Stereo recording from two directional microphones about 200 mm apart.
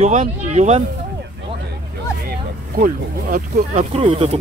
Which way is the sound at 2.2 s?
45° right (ahead or behind).